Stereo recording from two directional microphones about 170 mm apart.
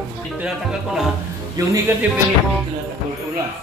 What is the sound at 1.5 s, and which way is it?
Speech, 20° right (ahead or behind).